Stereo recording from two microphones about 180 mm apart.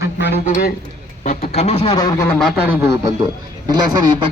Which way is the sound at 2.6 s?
10° right (ahead or behind).